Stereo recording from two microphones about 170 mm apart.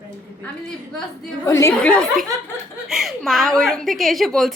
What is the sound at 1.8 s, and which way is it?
A woman's voice, 5° left (ahead or behind).